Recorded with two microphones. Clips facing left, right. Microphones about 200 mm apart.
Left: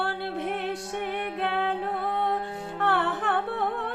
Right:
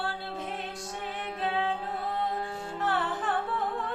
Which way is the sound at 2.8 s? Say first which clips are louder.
Left 4 dB; 60° left (ahead or behind).